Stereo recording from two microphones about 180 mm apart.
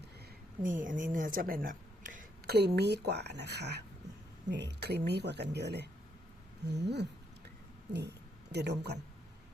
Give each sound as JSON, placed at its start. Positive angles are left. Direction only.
{"t": 0.6, "sound": "speech", "side_deg": -45}
{"t": 2.6, "sound": "speech", "side_deg": -65}
{"t": 8.5, "sound": "speech", "side_deg": -65}